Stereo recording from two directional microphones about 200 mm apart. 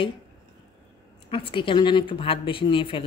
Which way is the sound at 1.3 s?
25° left (ahead or behind).